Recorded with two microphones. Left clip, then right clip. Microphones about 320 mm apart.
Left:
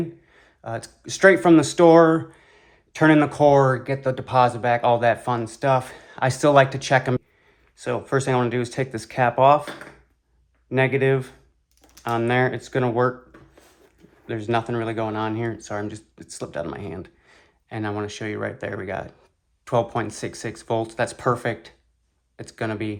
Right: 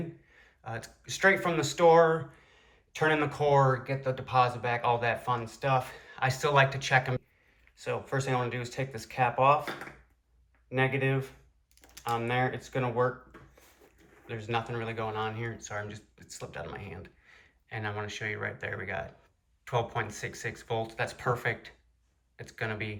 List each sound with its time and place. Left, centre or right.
0.3 s speech: centre
10.7 s speech: left
14.3 s speech: left